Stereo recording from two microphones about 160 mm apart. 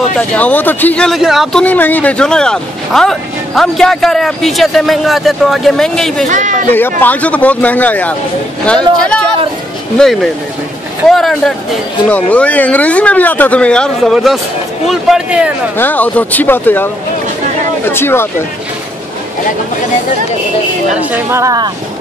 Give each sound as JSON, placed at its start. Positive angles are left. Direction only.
{"t": 0.3, "sound": "speech", "side_deg": 10}
{"t": 6.2, "sound": "speech", "side_deg": -50}
{"t": 6.7, "sound": "speech", "side_deg": 10}
{"t": 15.8, "sound": "speech", "side_deg": 10}
{"t": 21.0, "sound": "speech", "side_deg": -15}